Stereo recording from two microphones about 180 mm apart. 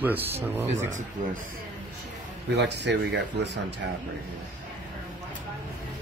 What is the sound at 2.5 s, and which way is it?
Speech, 70° right (ahead or behind).